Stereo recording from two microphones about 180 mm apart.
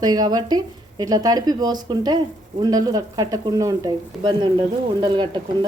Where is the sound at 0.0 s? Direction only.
25° right (ahead or behind).